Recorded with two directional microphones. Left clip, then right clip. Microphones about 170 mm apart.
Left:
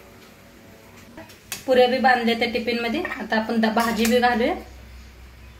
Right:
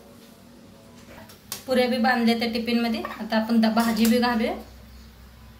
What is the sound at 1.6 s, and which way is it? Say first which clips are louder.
A woman's voice: left 5 dB; 30° left (ahead or behind).